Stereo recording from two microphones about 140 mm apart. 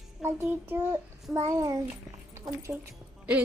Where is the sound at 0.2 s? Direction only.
15° right (ahead or behind).